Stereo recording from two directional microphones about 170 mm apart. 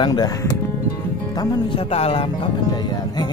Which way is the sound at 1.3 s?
25° left (ahead or behind).